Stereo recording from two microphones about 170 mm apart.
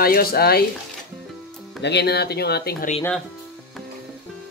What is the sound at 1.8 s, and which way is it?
Speech, 75° left (ahead or behind).